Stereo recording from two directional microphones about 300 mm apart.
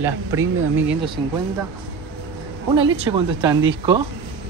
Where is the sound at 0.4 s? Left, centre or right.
Right.